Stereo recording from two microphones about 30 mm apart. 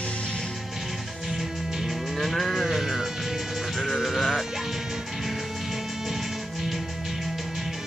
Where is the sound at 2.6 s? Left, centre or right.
Centre.